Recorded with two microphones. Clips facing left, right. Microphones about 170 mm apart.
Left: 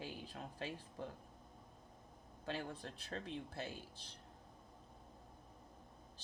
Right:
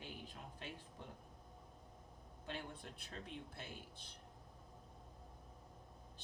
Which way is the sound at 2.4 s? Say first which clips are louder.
Left 4 dB; 90° left.